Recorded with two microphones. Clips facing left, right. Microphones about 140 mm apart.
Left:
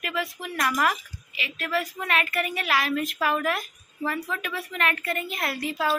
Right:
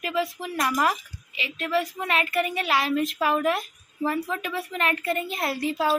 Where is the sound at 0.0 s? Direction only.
30° right (ahead or behind).